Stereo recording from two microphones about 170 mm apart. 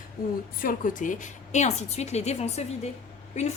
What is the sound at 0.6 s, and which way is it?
A woman's voice, 55° left (ahead or behind).